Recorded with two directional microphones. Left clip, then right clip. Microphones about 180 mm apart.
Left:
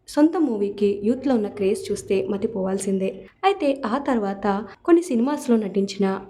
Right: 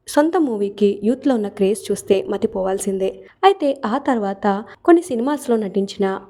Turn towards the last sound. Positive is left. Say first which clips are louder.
# right 3 dB
turn(degrees=-30)  # may be behind; listen again after turning